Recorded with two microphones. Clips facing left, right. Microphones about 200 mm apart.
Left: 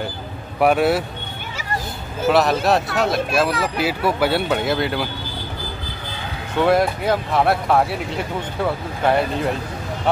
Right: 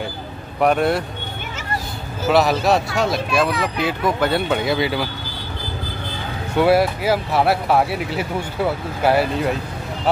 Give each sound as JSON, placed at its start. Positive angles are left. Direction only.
{"t": 0.6, "sound": "speech", "side_deg": 5}
{"t": 2.2, "sound": "speech", "side_deg": 0}
{"t": 6.5, "sound": "speech", "side_deg": -5}